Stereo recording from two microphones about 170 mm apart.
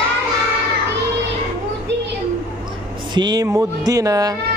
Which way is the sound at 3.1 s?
25° right (ahead or behind).